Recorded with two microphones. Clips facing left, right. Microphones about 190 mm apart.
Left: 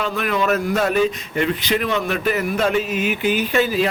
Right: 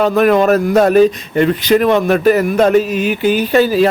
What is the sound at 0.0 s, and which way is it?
A man's voice, 45° right (ahead or behind).